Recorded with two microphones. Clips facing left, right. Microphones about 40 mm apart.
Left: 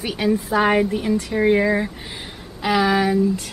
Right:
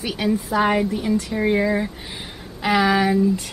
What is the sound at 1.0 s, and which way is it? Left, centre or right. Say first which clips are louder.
Speech: left 2 dB; centre.